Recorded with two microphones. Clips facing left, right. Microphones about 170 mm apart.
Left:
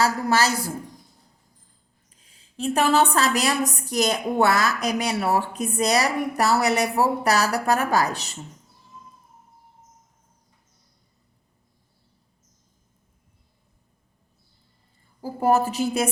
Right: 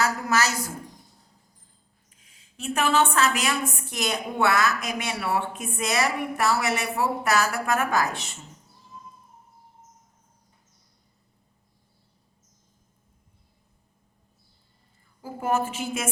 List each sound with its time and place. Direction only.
0.0 s a woman's voice: 30° left (ahead or behind)
2.0 s a woman's voice: 35° left (ahead or behind)
15.2 s a woman's voice: 35° left (ahead or behind)